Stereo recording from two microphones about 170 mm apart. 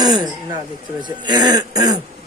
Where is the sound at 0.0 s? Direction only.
25° right (ahead or behind).